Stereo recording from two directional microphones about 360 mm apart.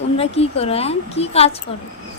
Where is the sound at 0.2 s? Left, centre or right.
Centre.